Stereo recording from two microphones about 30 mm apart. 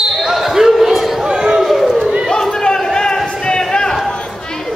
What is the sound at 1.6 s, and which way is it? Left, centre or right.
Run, centre.